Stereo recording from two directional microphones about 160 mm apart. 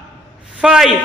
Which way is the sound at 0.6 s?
5° right (ahead or behind).